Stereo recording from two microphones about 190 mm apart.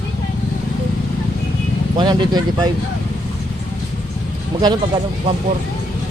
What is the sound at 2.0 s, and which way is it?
Speech, 20° right (ahead or behind).